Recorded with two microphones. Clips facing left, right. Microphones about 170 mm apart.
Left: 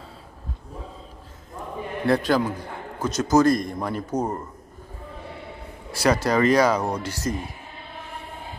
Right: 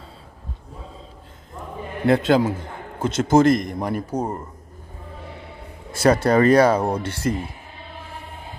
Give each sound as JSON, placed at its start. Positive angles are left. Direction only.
{"t": 2.0, "sound": "a man's voice", "side_deg": -25}
{"t": 5.9, "sound": "a sound", "side_deg": -25}
{"t": 6.1, "sound": "speech", "side_deg": -55}
{"t": 6.4, "sound": "a man's voice", "side_deg": -30}